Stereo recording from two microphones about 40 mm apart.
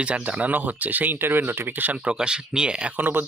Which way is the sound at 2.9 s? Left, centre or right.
Right.